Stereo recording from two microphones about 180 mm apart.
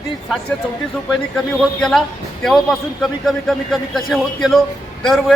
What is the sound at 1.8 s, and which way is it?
A man's voice, 5° left (ahead or behind).